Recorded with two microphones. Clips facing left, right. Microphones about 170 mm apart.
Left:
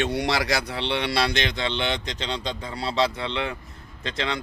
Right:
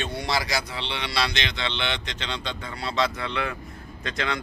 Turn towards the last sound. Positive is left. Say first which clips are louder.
# left 1 dB
turn(degrees=25)  # may be behind; listen again after turning